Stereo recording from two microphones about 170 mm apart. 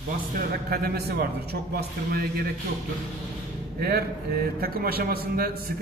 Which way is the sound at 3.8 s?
65° right (ahead or behind).